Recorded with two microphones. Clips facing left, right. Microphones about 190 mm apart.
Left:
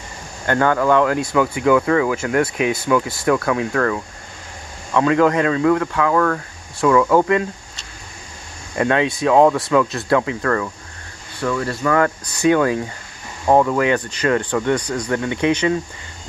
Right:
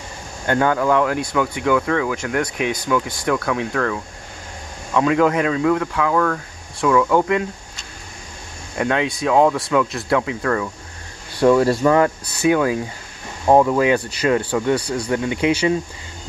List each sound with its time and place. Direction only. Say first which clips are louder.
0.5 s speech: left 1 dB; 10° right (ahead or behind)
8.7 s speech: left 2 dB; centre (ahead or behind)
11.3 s speech: right 8 dB; 35° right (ahead or behind)
11.8 s speech: right 2 dB; 20° right (ahead or behind)
12.4 s speech: left 1 dB; 5° right (ahead or behind)